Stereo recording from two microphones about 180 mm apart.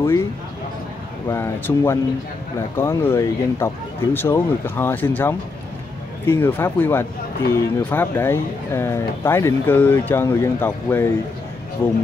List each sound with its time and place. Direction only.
0.0 s speech: 15° left (ahead or behind)
1.3 s speech: 15° left (ahead or behind)